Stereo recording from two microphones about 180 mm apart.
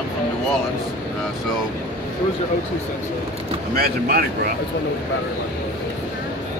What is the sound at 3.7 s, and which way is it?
Speech, 55° right (ahead or behind).